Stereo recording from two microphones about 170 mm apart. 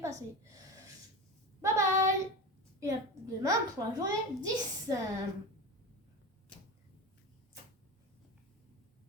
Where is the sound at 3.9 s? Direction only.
20° right (ahead or behind).